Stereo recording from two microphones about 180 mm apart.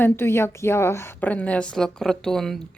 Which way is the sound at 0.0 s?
15° left (ahead or behind).